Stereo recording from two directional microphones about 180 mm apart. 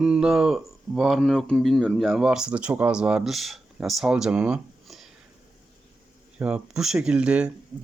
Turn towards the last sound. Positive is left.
turn(degrees=-5)  # may be behind; listen again after turning